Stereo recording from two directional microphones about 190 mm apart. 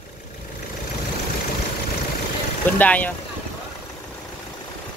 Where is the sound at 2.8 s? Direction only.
10° left (ahead or behind).